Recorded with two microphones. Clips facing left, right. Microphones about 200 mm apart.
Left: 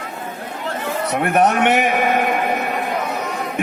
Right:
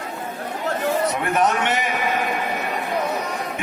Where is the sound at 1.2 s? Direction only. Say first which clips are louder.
Left 5 dB; 60° left (ahead or behind).